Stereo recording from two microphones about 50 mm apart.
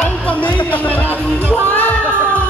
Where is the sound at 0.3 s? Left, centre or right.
Left.